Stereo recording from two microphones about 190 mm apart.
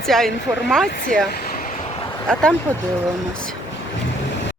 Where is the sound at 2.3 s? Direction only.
5° left (ahead or behind).